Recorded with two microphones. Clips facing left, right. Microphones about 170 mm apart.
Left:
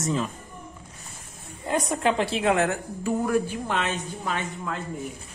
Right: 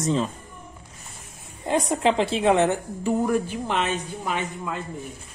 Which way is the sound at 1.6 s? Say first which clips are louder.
Right 3 dB; 25° right (ahead or behind).